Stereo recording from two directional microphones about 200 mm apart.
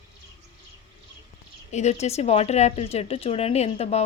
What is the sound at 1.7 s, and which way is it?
Speech, 35° left (ahead or behind).